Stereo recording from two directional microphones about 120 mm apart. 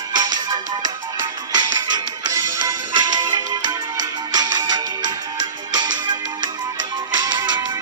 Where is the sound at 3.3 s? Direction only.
35° right (ahead or behind).